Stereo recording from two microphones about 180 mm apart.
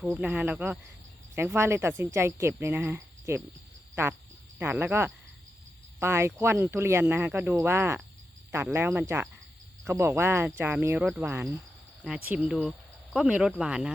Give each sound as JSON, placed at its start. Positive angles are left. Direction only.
{"t": 0.0, "sound": "speech", "side_deg": -10}
{"t": 4.5, "sound": "speech", "side_deg": -10}